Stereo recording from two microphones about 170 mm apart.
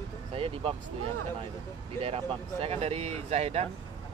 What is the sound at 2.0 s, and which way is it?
Speech, 35° right (ahead or behind).